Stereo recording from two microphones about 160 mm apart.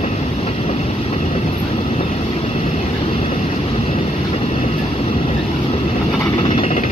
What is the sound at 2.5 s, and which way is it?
Vehicle, 45° left (ahead or behind).